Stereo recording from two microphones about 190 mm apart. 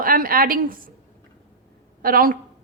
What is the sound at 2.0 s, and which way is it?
Speech, 50° right (ahead or behind).